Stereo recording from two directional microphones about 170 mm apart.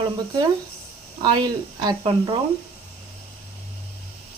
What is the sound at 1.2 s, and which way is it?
Speech, 25° right (ahead or behind).